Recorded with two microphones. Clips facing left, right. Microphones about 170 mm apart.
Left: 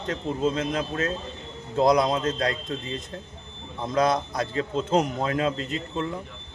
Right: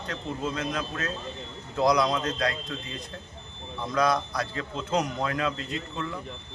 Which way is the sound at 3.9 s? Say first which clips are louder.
Left 2 dB; 25° left (ahead or behind).